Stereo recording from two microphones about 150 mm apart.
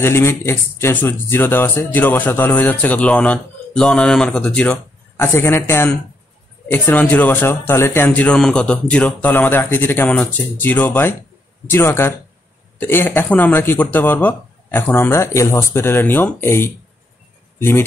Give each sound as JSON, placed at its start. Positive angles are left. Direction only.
{"t": 0.0, "sound": "speech", "side_deg": 15}